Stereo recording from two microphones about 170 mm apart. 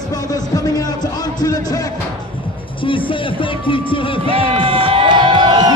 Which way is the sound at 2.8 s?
30° left (ahead or behind).